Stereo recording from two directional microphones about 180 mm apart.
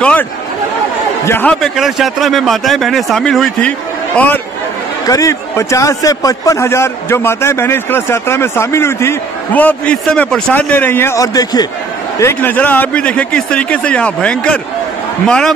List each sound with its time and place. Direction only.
0.0 s chatter: 10° left (ahead or behind)
1.2 s a man's voice: 10° left (ahead or behind)
5.0 s a man's voice: 20° left (ahead or behind)